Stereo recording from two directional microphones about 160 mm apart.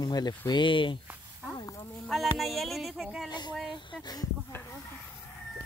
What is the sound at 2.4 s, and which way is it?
Speech, centre (ahead or behind).